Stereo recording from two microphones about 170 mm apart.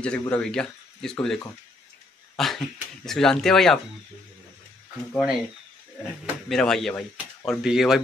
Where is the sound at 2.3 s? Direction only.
Centre (ahead or behind).